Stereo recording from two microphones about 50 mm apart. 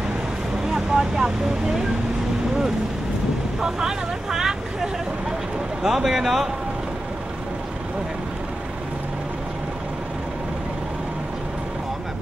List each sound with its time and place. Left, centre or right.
0.7 s speech: centre
3.6 s vehicle: centre
5.8 s speech: centre